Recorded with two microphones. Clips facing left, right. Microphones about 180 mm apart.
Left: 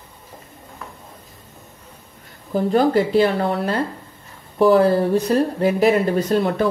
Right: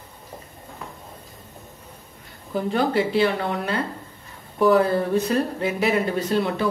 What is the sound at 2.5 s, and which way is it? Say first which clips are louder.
A woman's voice: left 5 dB; 40° left (ahead or behind).